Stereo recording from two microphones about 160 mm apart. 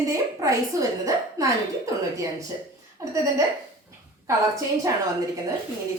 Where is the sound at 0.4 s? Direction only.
20° right (ahead or behind).